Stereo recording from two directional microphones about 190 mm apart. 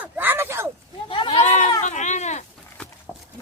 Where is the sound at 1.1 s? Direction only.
25° left (ahead or behind).